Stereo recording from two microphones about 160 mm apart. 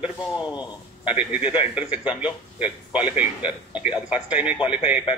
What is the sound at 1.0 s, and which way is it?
A man's voice, 10° right (ahead or behind).